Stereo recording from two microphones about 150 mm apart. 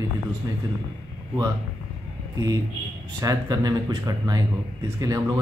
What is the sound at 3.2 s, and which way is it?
Speech, 25° right (ahead or behind).